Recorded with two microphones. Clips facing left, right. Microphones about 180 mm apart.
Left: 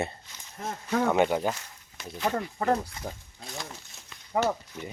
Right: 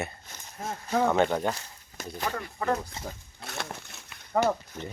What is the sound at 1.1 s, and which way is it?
Speech, 10° left (ahead or behind).